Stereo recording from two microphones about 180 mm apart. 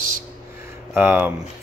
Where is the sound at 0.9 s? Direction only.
10° right (ahead or behind).